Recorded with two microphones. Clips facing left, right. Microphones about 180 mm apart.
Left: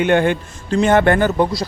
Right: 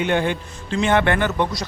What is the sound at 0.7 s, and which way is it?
Speech, 40° left (ahead or behind).